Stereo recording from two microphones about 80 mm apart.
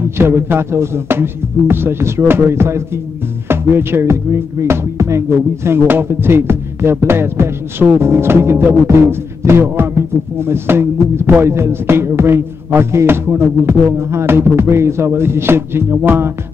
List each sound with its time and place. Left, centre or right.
0.2 s music: right